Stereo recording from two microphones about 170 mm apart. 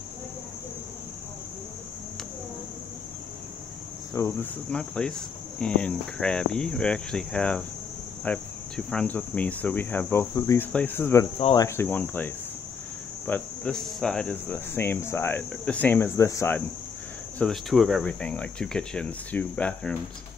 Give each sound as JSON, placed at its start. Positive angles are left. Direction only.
{"t": 4.1, "sound": "cricket", "side_deg": 15}
{"t": 8.2, "sound": "speech", "side_deg": 5}
{"t": 10.3, "sound": "cricket", "side_deg": 20}
{"t": 10.7, "sound": "speech", "side_deg": 10}
{"t": 13.3, "sound": "speech", "side_deg": 5}
{"t": 17.4, "sound": "speech", "side_deg": 0}